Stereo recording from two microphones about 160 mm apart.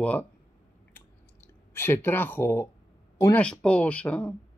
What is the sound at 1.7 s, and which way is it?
Speech, 15° left (ahead or behind).